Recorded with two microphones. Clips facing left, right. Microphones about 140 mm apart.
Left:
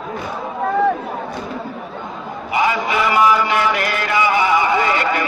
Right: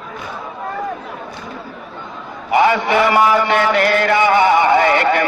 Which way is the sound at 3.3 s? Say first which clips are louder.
Right 3 dB; 55° right (ahead or behind).